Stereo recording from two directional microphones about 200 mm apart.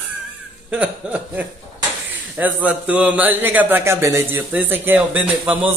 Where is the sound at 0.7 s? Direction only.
5° right (ahead or behind).